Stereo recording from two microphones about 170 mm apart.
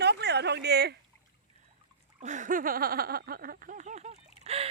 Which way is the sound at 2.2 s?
45° right (ahead or behind).